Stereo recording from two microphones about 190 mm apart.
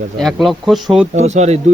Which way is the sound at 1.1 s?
35° right (ahead or behind).